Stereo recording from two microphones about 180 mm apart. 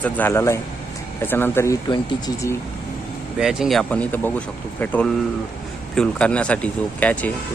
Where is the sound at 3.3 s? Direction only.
5° right (ahead or behind).